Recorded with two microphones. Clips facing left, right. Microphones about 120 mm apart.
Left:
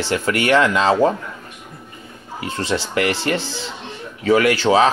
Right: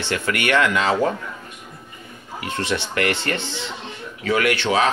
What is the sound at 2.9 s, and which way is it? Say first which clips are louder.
Speech: left 3 dB; 20° left (ahead or behind).